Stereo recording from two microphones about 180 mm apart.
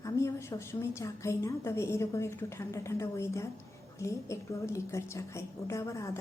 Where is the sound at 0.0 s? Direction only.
15° left (ahead or behind).